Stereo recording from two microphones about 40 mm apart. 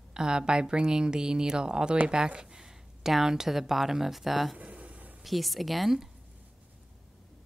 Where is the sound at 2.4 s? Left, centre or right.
Centre.